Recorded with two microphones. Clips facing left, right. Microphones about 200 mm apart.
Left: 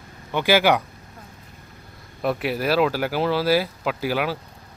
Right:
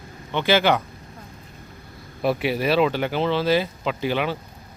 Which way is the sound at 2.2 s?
Centre (ahead or behind).